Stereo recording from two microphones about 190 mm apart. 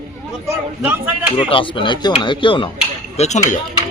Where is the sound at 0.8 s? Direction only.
10° right (ahead or behind).